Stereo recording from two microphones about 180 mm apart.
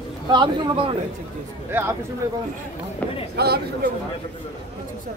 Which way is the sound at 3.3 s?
65° right (ahead or behind).